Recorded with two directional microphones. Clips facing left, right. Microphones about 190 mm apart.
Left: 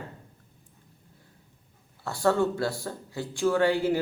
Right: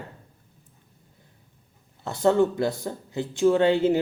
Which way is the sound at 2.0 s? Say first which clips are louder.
Right 4 dB; 20° right (ahead or behind).